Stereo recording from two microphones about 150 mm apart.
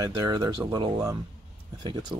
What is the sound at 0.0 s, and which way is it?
Speech, 25° right (ahead or behind).